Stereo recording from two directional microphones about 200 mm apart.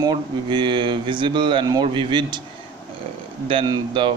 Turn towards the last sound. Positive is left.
turn(degrees=-20)  # may be behind; listen again after turning